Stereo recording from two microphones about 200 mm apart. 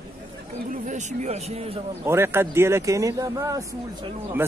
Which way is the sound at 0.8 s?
35° right (ahead or behind).